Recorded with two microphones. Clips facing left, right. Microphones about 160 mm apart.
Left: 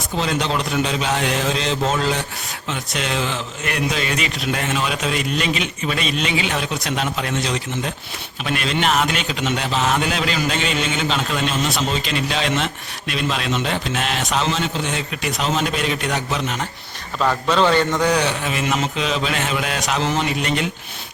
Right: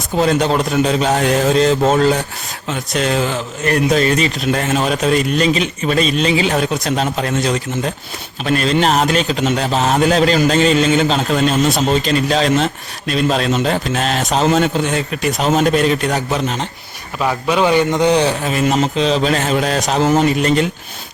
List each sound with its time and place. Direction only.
0.2 s a man's voice: 45° right (ahead or behind)
17.2 s a man's voice: 10° right (ahead or behind); by 20.7 s 40° right (ahead or behind)